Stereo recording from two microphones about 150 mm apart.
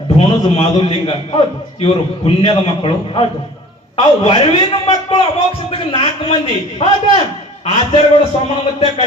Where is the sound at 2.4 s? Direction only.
35° left (ahead or behind).